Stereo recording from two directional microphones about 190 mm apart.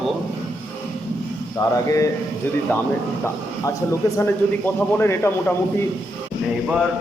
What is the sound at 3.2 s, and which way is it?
A man's voice, 15° left (ahead or behind).